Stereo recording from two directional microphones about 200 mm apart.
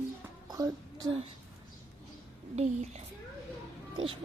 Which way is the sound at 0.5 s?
20° right (ahead or behind).